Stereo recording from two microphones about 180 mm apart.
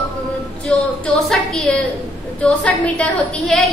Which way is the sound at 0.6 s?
5° left (ahead or behind).